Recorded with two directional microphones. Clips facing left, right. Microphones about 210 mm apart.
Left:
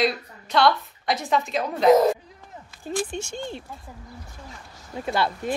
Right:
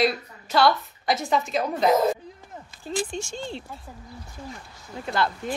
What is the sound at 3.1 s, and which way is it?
Speech, 55° left (ahead or behind).